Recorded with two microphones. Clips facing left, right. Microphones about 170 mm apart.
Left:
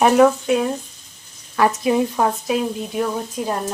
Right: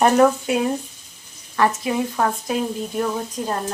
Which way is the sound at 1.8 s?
15° left (ahead or behind).